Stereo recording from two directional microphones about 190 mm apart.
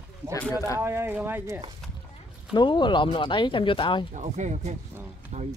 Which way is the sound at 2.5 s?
25° left (ahead or behind).